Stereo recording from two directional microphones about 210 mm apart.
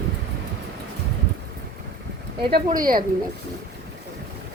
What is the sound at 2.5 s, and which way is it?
Speech, 40° right (ahead or behind).